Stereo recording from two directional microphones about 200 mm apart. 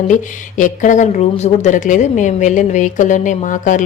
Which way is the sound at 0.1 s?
40° left (ahead or behind).